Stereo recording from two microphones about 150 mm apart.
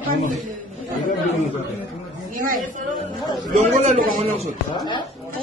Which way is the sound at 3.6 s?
55° right (ahead or behind).